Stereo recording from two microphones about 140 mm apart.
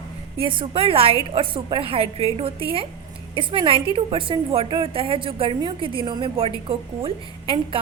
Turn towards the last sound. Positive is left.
turn(degrees=-40)  # may be behind; listen again after turning